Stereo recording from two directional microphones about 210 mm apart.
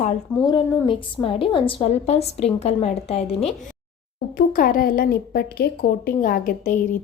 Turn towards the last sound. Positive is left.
turn(degrees=40)  # may be behind; listen again after turning